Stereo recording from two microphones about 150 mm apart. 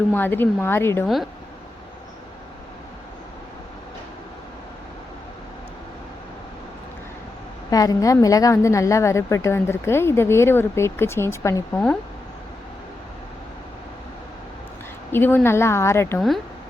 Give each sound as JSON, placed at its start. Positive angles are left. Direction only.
{"t": 0.1, "sound": "a woman's voice", "side_deg": 15}
{"t": 1.0, "sound": "speech", "side_deg": 0}
{"t": 7.7, "sound": "a woman's voice", "side_deg": 25}
{"t": 15.1, "sound": "a woman's voice", "side_deg": 15}